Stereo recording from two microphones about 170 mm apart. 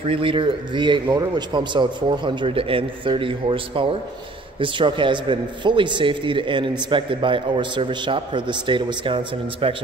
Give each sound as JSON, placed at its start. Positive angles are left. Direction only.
{"t": 0.1, "sound": "a man's voice", "side_deg": -30}